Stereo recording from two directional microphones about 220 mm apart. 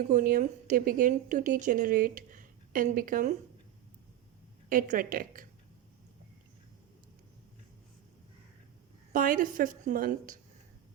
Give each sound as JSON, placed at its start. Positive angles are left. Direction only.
{"t": 0.0, "sound": "speech", "side_deg": -40}
{"t": 4.7, "sound": "speech", "side_deg": -40}
{"t": 9.1, "sound": "speech", "side_deg": -40}